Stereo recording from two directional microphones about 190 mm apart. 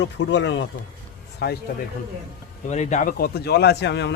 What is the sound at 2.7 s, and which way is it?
A man's voice, 40° left (ahead or behind).